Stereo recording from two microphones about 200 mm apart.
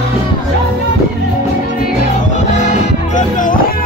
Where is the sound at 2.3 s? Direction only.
35° left (ahead or behind).